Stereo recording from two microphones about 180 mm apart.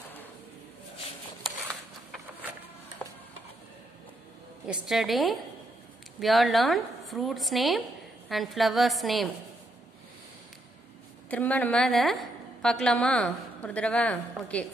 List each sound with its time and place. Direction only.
4.6 s a woman's voice: centre (ahead or behind)
11.2 s a woman's voice: 10° left (ahead or behind)